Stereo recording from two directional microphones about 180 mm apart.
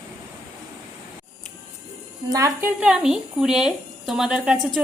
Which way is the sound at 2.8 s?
5° right (ahead or behind).